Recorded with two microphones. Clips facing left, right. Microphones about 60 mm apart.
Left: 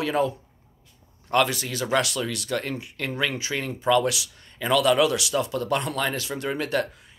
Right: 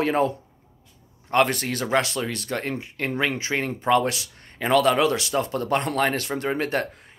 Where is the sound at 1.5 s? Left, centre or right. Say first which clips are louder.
Right 2 dB; right.